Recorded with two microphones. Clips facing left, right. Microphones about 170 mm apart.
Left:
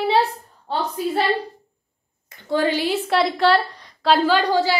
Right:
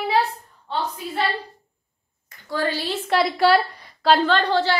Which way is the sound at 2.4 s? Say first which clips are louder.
Left 5 dB; 20° left (ahead or behind).